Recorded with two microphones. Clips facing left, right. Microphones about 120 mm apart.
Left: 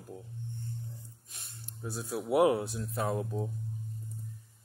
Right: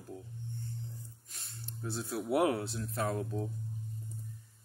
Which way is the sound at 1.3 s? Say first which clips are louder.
Right 2 dB; 15° left (ahead or behind).